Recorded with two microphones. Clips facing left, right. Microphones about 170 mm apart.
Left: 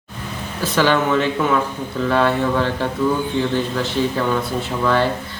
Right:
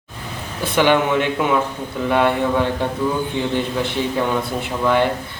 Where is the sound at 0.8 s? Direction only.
15° right (ahead or behind).